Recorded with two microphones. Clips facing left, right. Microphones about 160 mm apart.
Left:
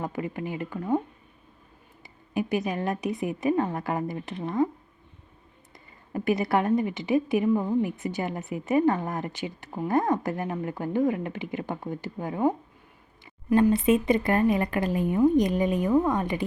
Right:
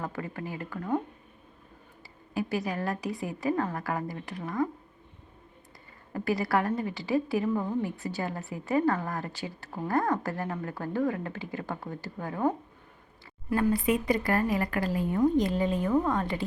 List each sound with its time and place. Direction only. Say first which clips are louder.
0.0 s a woman's voice: left 4 dB; 20° left (ahead or behind)
2.3 s a woman's voice: left 3 dB; 20° left (ahead or behind)
6.1 s a woman's voice: left 3 dB; 20° left (ahead or behind)